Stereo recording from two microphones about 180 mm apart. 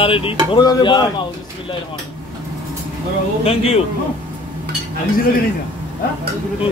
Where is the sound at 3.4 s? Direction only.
35° left (ahead or behind).